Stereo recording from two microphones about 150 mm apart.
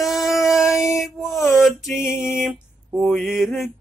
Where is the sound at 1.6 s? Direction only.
Centre (ahead or behind).